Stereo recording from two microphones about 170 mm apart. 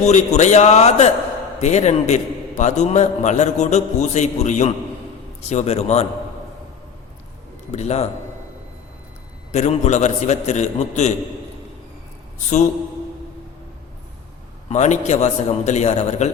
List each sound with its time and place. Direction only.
0.0 s a man's voice: 45° left (ahead or behind)
7.7 s a man's voice: 40° left (ahead or behind)
9.5 s a man's voice: 45° left (ahead or behind)
14.7 s a man's voice: 45° left (ahead or behind)